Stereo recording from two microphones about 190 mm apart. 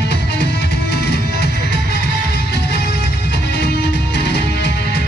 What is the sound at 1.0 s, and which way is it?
Music, 60° left (ahead or behind).